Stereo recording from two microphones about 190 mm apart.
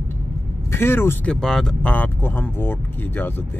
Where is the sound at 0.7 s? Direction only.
15° left (ahead or behind).